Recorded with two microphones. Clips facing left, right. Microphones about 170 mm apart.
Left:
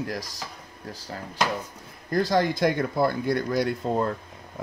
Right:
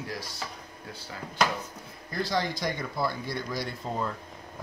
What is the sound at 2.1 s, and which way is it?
Speech, 50° left (ahead or behind).